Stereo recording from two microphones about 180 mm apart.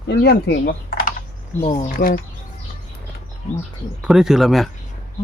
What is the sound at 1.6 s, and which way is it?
Speech, 35° left (ahead or behind).